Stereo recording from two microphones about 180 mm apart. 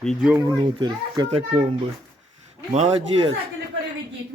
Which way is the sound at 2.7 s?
35° right (ahead or behind).